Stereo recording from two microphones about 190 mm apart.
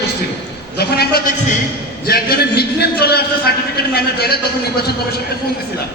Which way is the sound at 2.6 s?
55° left (ahead or behind).